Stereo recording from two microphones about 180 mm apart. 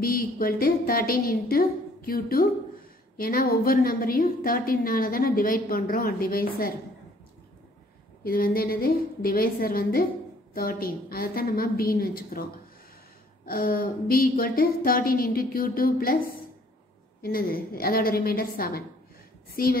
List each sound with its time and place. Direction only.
0.0 s a woman's voice: 55° left (ahead or behind)
8.2 s a woman's voice: 55° left (ahead or behind)
13.5 s a woman's voice: 55° left (ahead or behind)